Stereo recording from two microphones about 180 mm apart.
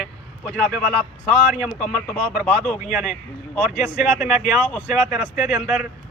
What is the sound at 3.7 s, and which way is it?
Speech, 45° left (ahead or behind).